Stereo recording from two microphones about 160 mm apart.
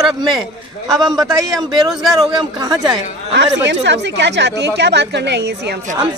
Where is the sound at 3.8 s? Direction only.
90° right.